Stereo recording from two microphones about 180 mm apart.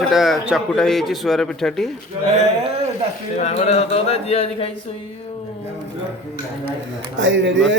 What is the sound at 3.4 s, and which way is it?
Speech, 35° left (ahead or behind).